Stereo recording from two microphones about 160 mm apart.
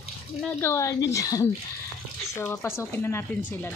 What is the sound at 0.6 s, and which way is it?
Speech, 20° left (ahead or behind).